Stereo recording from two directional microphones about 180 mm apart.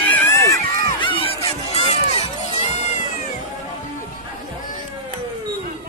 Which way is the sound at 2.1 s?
40° left (ahead or behind).